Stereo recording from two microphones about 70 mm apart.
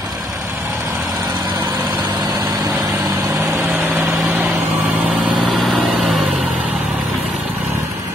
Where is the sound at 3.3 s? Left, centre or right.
Right.